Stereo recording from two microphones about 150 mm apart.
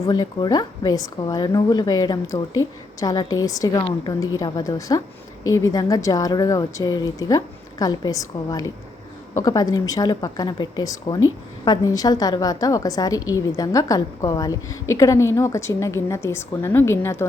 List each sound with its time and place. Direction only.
0.0 s a woman's voice: 25° left (ahead or behind)